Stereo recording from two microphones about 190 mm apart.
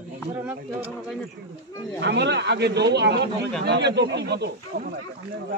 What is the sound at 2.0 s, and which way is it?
Speech, 65° right (ahead or behind).